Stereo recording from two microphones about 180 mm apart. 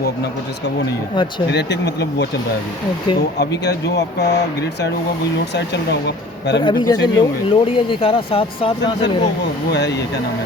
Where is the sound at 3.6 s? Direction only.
65° left (ahead or behind).